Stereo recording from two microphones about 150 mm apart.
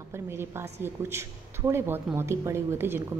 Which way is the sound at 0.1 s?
15° right (ahead or behind).